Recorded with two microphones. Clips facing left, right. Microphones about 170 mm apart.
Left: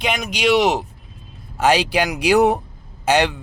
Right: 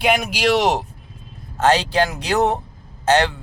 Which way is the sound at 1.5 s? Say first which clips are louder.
Even; 10° left (ahead or behind).